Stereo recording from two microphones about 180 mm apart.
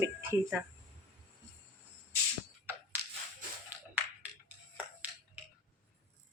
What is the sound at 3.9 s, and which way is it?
Music, 10° right (ahead or behind).